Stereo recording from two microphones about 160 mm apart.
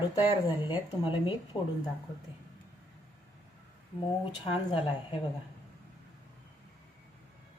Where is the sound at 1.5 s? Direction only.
15° left (ahead or behind).